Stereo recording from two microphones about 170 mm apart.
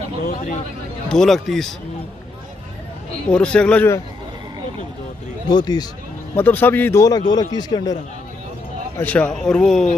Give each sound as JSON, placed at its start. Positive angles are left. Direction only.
{"t": 1.0, "sound": "speech", "side_deg": 5}
{"t": 3.3, "sound": "a man's voice", "side_deg": 5}
{"t": 5.5, "sound": "speech", "side_deg": 25}
{"t": 6.3, "sound": "a man's voice", "side_deg": 10}
{"t": 8.9, "sound": "speech", "side_deg": 10}